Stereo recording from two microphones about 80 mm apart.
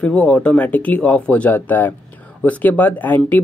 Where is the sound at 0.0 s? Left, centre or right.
Centre.